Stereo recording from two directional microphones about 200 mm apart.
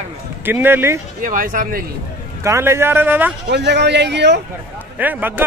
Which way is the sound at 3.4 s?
55° right (ahead or behind).